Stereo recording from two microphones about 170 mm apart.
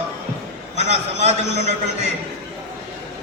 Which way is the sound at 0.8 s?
40° right (ahead or behind).